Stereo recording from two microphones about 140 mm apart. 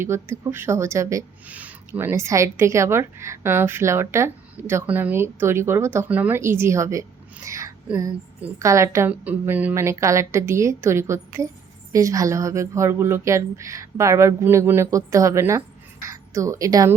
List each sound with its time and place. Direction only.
0.0 s a woman's voice: 15° right (ahead or behind)
7.4 s a sound: 20° right (ahead or behind)
8.5 s a woman's voice: 20° right (ahead or behind)